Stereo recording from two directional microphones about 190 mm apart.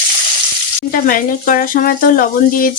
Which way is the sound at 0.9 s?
45° left (ahead or behind).